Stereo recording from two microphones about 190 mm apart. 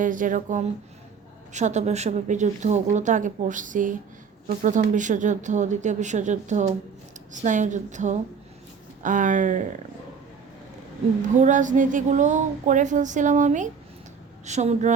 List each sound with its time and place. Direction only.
0.0 s speech: 45° right (ahead or behind)
11.3 s speech: 40° right (ahead or behind)